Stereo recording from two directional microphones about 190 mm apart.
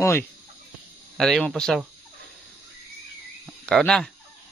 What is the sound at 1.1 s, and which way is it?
Speech, centre (ahead or behind).